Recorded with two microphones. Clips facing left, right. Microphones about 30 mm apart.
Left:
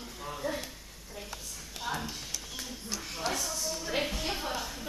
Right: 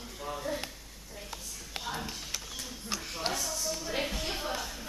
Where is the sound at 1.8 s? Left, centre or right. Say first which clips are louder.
Left 1 dB; right.